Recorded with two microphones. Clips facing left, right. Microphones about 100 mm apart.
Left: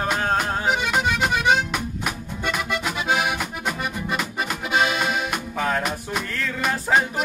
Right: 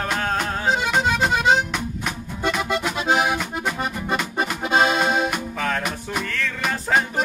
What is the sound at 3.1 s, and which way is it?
Accordion, 30° right (ahead or behind).